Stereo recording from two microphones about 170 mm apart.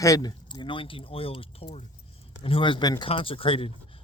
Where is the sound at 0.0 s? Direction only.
20° left (ahead or behind).